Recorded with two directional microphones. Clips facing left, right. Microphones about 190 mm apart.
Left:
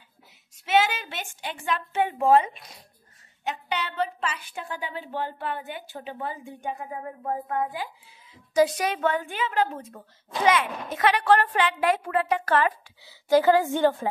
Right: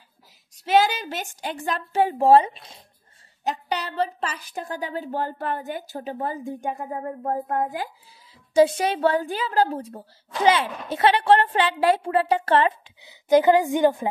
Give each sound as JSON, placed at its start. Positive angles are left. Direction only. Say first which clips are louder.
{"t": 0.7, "sound": "a woman's voice", "louder": "right 3 dB", "side_deg": -40}
{"t": 3.4, "sound": "a woman's voice", "louder": "right 3 dB", "side_deg": -40}
{"t": 8.5, "sound": "a woman's voice", "louder": "right 4 dB", "side_deg": -25}